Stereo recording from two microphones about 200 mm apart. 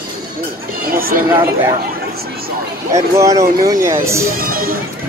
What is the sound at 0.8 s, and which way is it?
Speech, 45° right (ahead or behind).